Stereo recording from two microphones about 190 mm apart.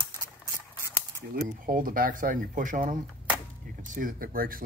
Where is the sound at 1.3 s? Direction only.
50° right (ahead or behind).